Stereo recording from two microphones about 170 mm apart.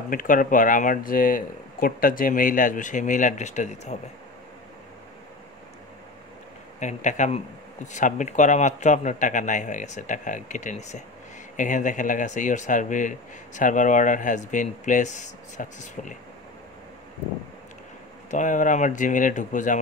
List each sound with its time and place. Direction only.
0.1 s speech: 55° left (ahead or behind)
6.8 s speech: 45° left (ahead or behind)
18.3 s speech: 50° left (ahead or behind)